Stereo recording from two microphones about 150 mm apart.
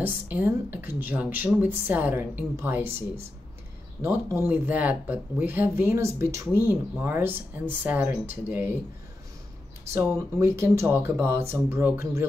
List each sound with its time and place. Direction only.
0.0 s speech: 10° right (ahead or behind)
4.0 s speech: 15° right (ahead or behind)
10.1 s speech: 20° right (ahead or behind)